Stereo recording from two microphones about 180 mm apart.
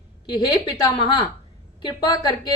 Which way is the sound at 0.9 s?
30° left (ahead or behind).